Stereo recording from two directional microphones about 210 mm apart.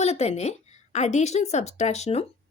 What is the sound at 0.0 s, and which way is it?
A woman's voice, 30° left (ahead or behind).